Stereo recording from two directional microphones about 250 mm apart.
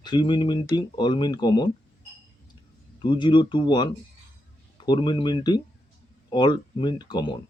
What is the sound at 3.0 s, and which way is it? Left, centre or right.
Speech, centre.